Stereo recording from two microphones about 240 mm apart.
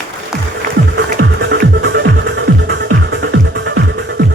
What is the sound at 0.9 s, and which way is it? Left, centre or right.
Music, right.